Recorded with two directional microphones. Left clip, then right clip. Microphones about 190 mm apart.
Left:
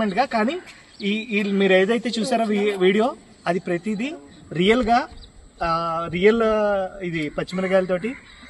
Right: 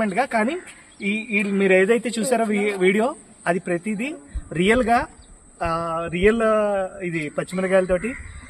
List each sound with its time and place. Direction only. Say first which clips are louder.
0.0 s a man's voice: even; 15° right (ahead or behind)